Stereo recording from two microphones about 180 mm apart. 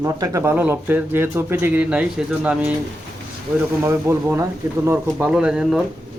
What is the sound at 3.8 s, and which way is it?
Speech, 15° right (ahead or behind).